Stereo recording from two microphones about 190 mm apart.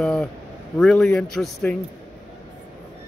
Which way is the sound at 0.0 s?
5° left (ahead or behind).